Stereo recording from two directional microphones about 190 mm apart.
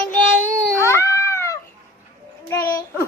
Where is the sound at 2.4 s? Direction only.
20° left (ahead or behind).